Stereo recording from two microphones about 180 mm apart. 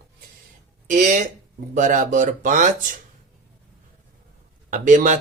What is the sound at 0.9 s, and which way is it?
Speech, 45° right (ahead or behind).